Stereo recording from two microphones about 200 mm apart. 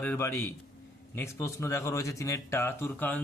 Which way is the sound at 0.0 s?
10° left (ahead or behind).